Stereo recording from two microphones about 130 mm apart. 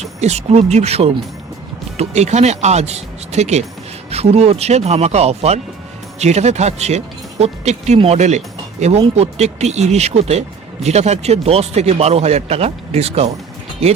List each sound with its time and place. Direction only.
0.0 s speech: 55° right (ahead or behind)
7.9 s a man's voice: 45° right (ahead or behind)